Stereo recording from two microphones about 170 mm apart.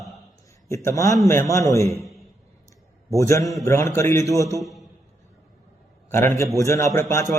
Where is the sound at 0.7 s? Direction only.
20° left (ahead or behind).